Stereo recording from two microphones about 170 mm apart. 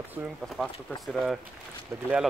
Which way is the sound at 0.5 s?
Centre (ahead or behind).